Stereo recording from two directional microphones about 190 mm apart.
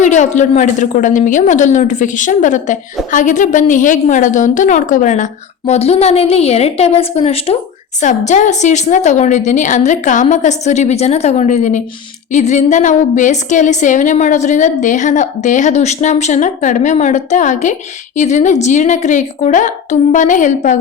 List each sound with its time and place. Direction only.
0.0 s a woman's voice: 40° left (ahead or behind)